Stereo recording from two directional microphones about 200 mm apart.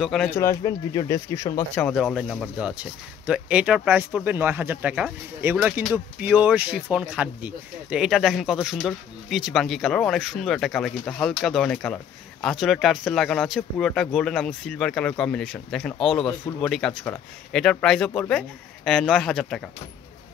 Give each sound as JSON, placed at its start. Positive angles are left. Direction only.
{"t": 0.0, "sound": "speech", "side_deg": 0}
{"t": 0.4, "sound": "speech", "side_deg": 15}
{"t": 2.6, "sound": "speech", "side_deg": -5}